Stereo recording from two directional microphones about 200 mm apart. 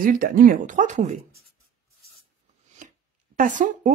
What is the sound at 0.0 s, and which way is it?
Speech, 45° right (ahead or behind).